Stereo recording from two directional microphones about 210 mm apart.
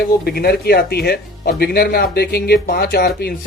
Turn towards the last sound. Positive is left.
turn(degrees=45)  # may be behind; listen again after turning